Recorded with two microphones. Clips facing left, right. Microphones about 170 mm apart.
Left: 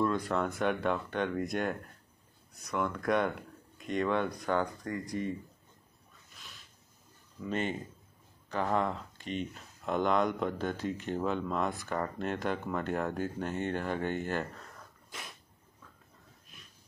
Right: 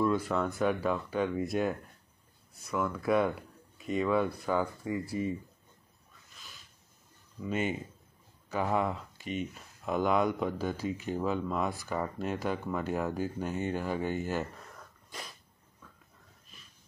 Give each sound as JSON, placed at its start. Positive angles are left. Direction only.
{"t": 0.0, "sound": "speech", "side_deg": -5}
{"t": 7.4, "sound": "speech", "side_deg": -5}
{"t": 15.0, "sound": "dog", "side_deg": 0}